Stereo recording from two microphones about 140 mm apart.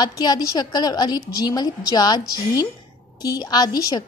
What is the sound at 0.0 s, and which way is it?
A woman's voice, 30° left (ahead or behind).